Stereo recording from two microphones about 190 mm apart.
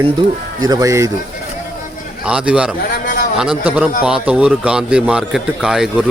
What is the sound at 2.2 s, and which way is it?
Speech, 5° right (ahead or behind).